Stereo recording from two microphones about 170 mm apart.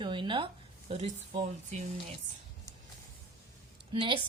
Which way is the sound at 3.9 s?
30° right (ahead or behind).